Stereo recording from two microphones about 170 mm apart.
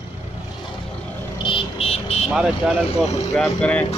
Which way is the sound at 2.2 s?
5° right (ahead or behind).